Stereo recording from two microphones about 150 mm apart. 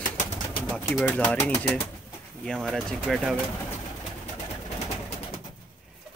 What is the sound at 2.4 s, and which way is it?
Speech, 5° left (ahead or behind).